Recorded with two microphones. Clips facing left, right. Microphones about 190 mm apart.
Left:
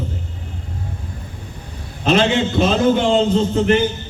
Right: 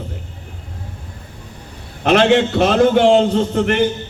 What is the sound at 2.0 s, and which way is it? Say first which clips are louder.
A man's voice: right 3 dB; 65° right (ahead or behind).